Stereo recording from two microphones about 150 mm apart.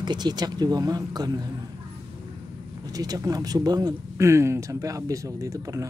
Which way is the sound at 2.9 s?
25° right (ahead or behind).